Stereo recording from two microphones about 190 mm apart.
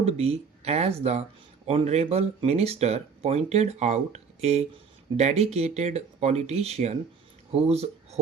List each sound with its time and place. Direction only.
0.0 s speech: 35° right (ahead or behind)